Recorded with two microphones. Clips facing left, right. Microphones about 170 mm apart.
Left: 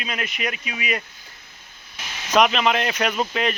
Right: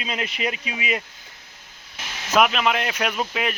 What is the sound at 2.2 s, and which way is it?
Speech, 5° right (ahead or behind).